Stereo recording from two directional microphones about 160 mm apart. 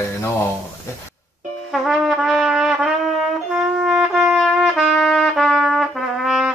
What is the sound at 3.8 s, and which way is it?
Trumpet, 5° right (ahead or behind).